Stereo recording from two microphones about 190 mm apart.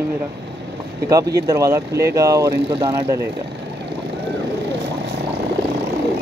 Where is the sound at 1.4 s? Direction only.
15° right (ahead or behind).